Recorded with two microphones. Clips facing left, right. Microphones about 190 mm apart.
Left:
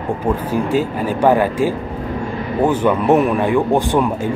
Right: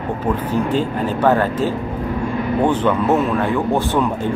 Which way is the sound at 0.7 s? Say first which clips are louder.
Left 2 dB; 10° left (ahead or behind).